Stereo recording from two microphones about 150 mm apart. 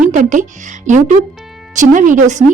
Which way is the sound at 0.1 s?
55° right (ahead or behind).